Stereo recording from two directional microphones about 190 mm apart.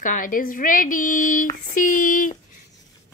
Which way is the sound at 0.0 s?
45° left (ahead or behind).